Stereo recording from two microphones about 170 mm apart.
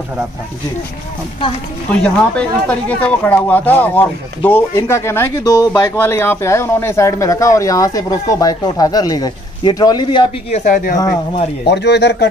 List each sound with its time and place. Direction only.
1.9 s speech: 5° left (ahead or behind); by 10.2 s 25° left (ahead or behind)
10.5 s speech: 50° left (ahead or behind)
11.6 s speech: 85° left